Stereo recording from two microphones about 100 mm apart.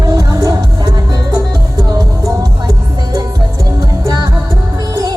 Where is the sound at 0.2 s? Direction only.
35° right (ahead or behind).